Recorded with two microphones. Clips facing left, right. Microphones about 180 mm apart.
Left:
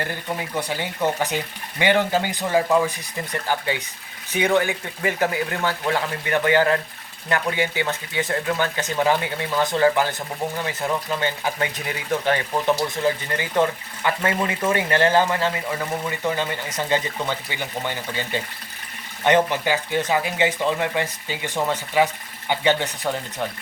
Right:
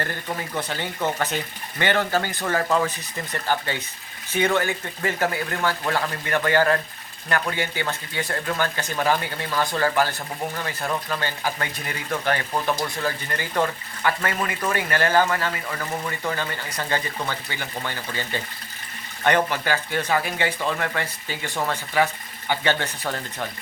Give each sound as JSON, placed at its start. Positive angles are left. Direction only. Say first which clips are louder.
{"t": 0.0, "sound": "speech", "louder": "left 1 dB", "side_deg": 10}
{"t": 4.3, "sound": "speech", "louder": "left 2 dB", "side_deg": 15}